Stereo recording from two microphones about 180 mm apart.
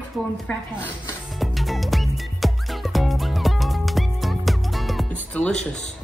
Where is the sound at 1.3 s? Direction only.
Centre (ahead or behind).